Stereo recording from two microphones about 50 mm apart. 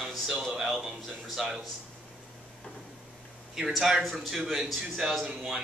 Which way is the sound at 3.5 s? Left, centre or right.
Centre.